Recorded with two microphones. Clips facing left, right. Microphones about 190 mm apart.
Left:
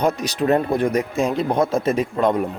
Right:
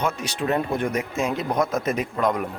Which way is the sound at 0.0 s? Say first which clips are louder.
Left 6 dB; 40° left (ahead or behind).